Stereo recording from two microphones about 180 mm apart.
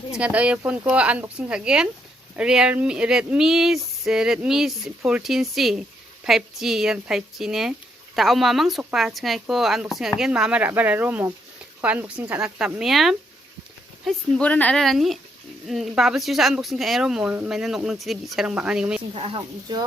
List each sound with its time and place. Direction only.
0.2 s speech: 5° right (ahead or behind)
19.1 s speech: 30° right (ahead or behind)